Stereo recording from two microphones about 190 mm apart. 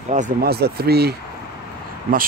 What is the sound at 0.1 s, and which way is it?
Speech, 45° right (ahead or behind).